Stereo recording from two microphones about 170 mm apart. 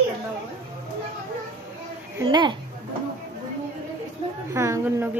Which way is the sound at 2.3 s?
25° right (ahead or behind).